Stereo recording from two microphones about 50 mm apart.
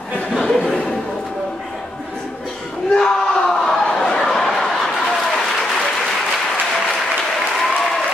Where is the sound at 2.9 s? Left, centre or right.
Centre.